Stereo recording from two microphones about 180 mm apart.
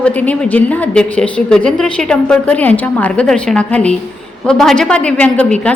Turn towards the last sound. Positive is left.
turn(degrees=5)  # may be behind; listen again after turning